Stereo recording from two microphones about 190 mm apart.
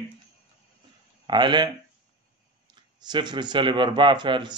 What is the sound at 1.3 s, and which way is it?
Speech, 25° right (ahead or behind).